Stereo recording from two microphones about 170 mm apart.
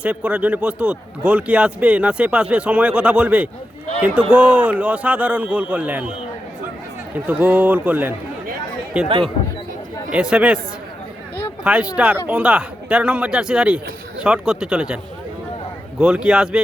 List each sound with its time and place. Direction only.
0.0 s a man's voice: 5° right (ahead or behind)
7.3 s a man's voice: 10° right (ahead or behind)
11.6 s speech: 5° right (ahead or behind)
16.0 s speech: 5° right (ahead or behind)